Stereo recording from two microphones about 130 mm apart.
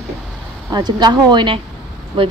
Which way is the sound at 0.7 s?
30° right (ahead or behind).